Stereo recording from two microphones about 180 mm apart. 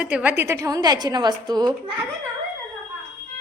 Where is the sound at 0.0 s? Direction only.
10° right (ahead or behind).